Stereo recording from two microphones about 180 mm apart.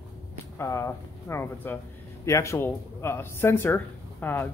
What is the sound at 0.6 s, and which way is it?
Speech, 15° left (ahead or behind).